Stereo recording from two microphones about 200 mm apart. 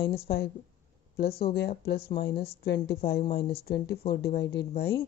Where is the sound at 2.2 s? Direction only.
55° left (ahead or behind).